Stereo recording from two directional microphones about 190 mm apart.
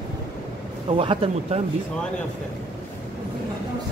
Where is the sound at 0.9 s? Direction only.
30° right (ahead or behind).